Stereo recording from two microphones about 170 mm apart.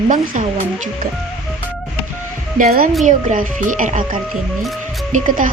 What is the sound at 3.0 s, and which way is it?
Speech, 50° right (ahead or behind).